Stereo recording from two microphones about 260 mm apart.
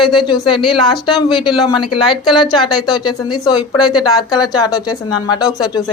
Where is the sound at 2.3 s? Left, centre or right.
Centre.